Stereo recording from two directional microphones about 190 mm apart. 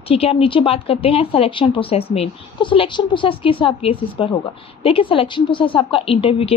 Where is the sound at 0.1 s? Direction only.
30° left (ahead or behind).